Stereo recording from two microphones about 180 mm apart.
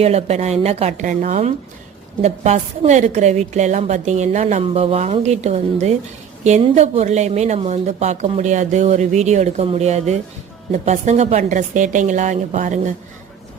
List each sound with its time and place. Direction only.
0.0 s a woman's voice: 35° right (ahead or behind)